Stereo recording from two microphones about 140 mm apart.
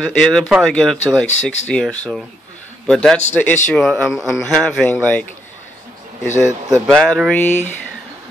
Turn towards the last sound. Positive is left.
turn(degrees=60)  # may be behind; listen again after turning